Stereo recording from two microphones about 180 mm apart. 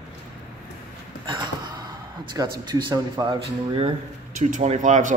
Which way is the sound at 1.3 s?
25° right (ahead or behind).